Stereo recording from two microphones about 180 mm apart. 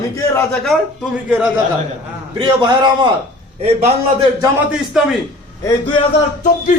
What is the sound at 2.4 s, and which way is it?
Speech, 25° right (ahead or behind).